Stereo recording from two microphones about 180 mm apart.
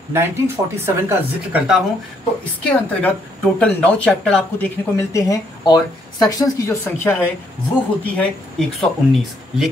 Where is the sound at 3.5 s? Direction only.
5° left (ahead or behind).